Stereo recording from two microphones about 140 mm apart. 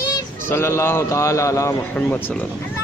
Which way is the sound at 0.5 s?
20° left (ahead or behind).